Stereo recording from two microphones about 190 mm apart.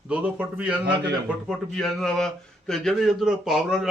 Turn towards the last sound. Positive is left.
turn(degrees=0)  # may be behind; listen again after turning